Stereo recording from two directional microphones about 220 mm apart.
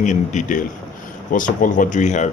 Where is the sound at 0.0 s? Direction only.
35° left (ahead or behind).